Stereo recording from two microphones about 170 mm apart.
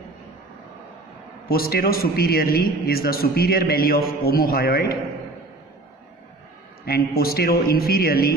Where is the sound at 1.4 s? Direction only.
65° left (ahead or behind).